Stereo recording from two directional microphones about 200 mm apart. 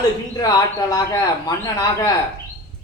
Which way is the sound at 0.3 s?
20° left (ahead or behind).